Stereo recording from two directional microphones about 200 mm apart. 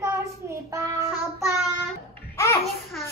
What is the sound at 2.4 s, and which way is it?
Babbling, 15° left (ahead or behind).